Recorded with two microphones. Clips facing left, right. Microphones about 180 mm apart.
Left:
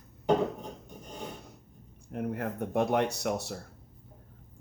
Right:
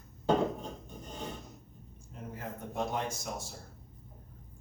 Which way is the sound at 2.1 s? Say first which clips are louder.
Left 9 dB; 65° left (ahead or behind).